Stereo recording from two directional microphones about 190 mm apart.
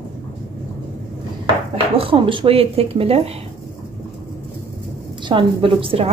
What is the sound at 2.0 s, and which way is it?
Speech, 25° right (ahead or behind).